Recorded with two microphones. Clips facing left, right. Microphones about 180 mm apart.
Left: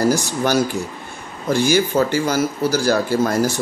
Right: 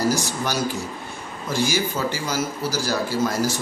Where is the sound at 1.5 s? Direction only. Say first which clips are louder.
Left 7 dB; 55° left (ahead or behind).